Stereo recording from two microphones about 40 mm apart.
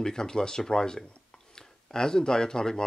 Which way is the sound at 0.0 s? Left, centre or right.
Centre.